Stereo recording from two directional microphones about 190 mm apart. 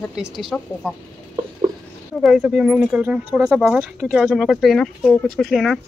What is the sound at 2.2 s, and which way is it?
Speech, centre (ahead or behind).